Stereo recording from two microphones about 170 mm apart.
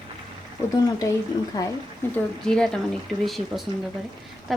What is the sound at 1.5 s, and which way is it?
Speech, 20° left (ahead or behind).